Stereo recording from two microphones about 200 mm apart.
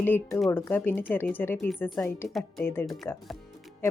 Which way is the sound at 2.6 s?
10° left (ahead or behind).